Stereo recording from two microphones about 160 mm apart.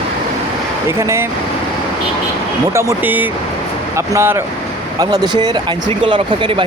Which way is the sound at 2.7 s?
15° right (ahead or behind).